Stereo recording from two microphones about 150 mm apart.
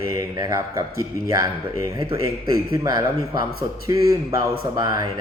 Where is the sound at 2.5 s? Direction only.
25° right (ahead or behind).